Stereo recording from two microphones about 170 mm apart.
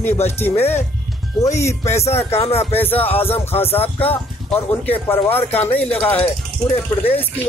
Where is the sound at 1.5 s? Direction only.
15° left (ahead or behind).